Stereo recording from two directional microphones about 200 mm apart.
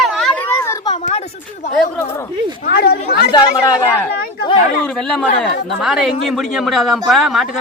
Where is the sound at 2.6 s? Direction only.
50° left (ahead or behind).